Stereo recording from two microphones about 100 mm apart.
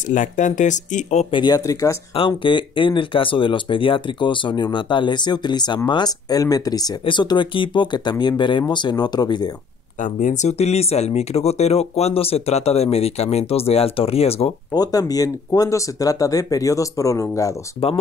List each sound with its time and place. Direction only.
1.3 s speech: 50° left (ahead or behind)
1.7 s speech: 35° left (ahead or behind)
2.1 s speech: 60° left (ahead or behind); by 6.9 s 40° left (ahead or behind)
7.1 s speech: 50° left (ahead or behind)
10.6 s speech: 90° left
14.7 s speech: 40° left (ahead or behind)